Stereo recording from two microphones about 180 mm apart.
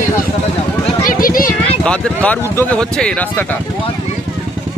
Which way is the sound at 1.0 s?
50° left (ahead or behind).